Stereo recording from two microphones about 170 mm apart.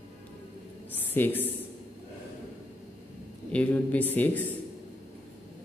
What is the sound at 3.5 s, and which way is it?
Speech, 10° left (ahead or behind).